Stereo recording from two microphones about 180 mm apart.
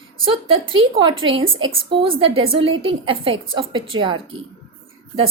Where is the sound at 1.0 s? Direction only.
25° right (ahead or behind).